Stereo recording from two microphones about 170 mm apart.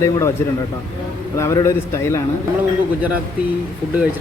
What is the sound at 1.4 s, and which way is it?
Speech, 15° left (ahead or behind).